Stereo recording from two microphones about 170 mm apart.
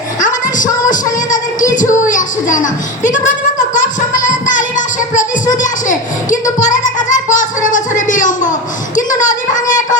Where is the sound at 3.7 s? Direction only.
50° left (ahead or behind).